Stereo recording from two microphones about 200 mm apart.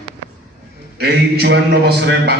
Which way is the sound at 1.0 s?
55° right (ahead or behind).